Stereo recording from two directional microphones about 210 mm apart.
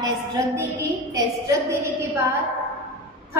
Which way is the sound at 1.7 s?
15° right (ahead or behind).